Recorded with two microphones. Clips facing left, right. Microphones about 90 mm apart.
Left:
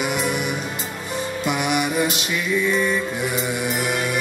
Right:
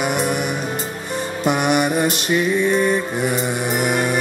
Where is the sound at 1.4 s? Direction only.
45° right (ahead or behind).